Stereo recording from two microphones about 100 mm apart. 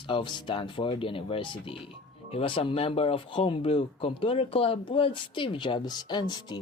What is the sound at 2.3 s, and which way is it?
Speech, 70° left (ahead or behind).